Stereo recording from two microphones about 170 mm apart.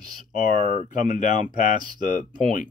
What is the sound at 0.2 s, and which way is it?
Speech, 50° left (ahead or behind).